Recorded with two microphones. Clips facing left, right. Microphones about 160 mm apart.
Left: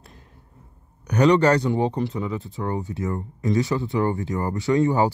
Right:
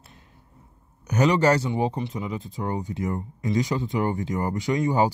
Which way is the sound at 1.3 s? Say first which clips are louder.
Left 3 dB; 10° right (ahead or behind).